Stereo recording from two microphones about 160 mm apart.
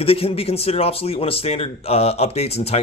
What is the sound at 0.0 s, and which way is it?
Speech, 35° left (ahead or behind).